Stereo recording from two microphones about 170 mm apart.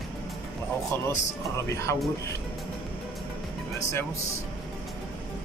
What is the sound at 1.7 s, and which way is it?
Speech, 15° left (ahead or behind).